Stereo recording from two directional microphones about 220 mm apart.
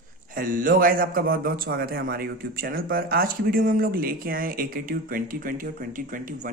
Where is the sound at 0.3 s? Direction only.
40° right (ahead or behind).